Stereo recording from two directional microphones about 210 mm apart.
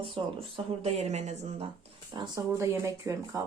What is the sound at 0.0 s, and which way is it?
Speech, 25° right (ahead or behind).